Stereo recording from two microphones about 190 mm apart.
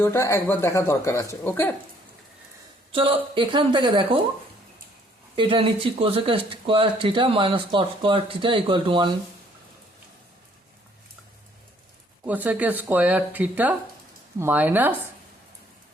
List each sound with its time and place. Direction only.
0.0 s speech: 15° left (ahead or behind)
2.9 s speech: 30° right (ahead or behind)
5.4 s speech: 25° right (ahead or behind)
12.2 s speech: 10° right (ahead or behind)